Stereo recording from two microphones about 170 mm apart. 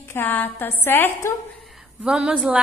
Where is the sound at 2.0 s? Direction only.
5° right (ahead or behind).